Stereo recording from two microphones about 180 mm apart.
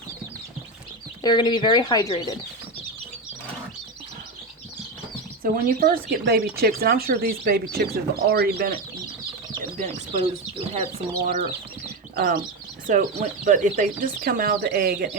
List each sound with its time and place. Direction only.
1.2 s speech: 25° left (ahead or behind)
5.4 s speech: 55° right (ahead or behind)
9.7 s speech: 40° right (ahead or behind)
12.1 s speech: 50° right (ahead or behind)